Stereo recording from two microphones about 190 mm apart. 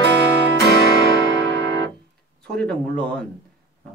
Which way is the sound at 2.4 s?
5° left (ahead or behind).